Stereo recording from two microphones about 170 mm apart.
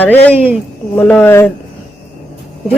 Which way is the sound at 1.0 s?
15° left (ahead or behind).